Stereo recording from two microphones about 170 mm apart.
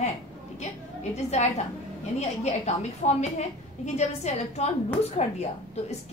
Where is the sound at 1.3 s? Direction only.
40° left (ahead or behind).